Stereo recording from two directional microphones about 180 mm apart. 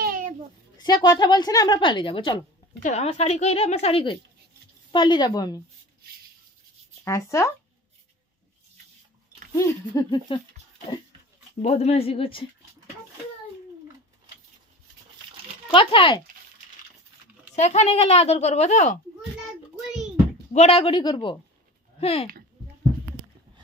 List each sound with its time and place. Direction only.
0.0 s a sound: 50° right (ahead or behind)
0.7 s a woman's voice: 25° left (ahead or behind)
2.8 s a woman's voice: 40° left (ahead or behind); by 5.6 s 20° left (ahead or behind)
7.1 s speech: 15° left (ahead or behind)
9.9 s a woman's voice: 25° left (ahead or behind)
11.6 s speech: 35° left (ahead or behind)
15.7 s a woman's voice: 30° left (ahead or behind)
17.6 s speech: 40° left (ahead or behind)
20.5 s a woman's voice: 35° left (ahead or behind)